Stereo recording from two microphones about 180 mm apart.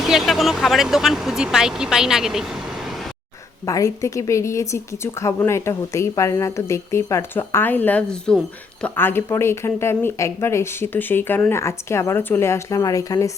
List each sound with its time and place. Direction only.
0.1 s speech: centre (ahead or behind)
3.7 s a woman's voice: 15° left (ahead or behind)